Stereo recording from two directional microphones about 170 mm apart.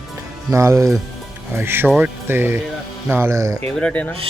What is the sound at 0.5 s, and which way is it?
Speech, 15° right (ahead or behind).